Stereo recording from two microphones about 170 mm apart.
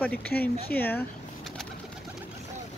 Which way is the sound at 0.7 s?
10° left (ahead or behind).